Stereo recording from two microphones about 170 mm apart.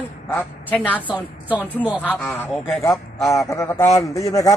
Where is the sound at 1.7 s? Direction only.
10° right (ahead or behind).